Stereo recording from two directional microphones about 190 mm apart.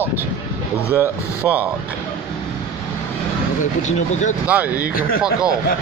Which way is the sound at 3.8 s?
40° left (ahead or behind).